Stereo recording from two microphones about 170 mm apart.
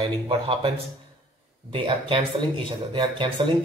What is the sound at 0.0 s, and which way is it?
Speech, 35° right (ahead or behind).